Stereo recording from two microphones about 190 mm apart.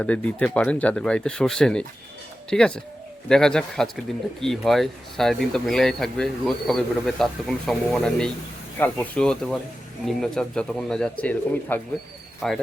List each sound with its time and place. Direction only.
0.0 s speech: 5° left (ahead or behind)